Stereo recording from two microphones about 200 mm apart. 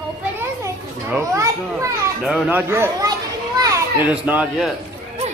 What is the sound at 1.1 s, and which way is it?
A child's voice, 15° right (ahead or behind).